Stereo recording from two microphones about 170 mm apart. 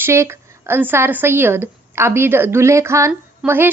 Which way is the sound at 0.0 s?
15° right (ahead or behind).